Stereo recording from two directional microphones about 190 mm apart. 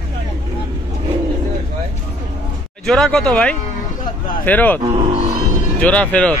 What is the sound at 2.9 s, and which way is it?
Speech, 5° left (ahead or behind).